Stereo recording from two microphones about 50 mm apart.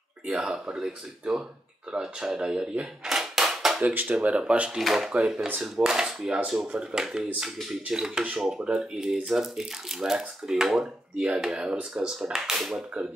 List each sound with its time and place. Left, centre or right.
0.3 s speech: centre
3.2 s a sound: centre
3.8 s speech: right
4.4 s speech: centre
4.7 s speech: centre